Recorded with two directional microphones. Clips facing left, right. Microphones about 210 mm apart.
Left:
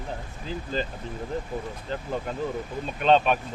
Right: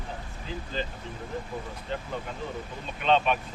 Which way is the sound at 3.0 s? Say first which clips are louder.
Left 4 dB; 45° left (ahead or behind).